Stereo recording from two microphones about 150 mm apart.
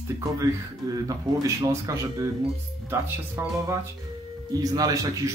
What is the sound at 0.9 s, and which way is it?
Speech, 20° right (ahead or behind).